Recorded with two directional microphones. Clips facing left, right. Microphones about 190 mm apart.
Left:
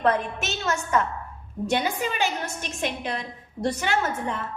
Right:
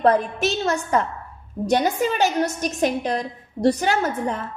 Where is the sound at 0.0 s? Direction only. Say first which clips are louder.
Right 5 dB; 35° right (ahead or behind).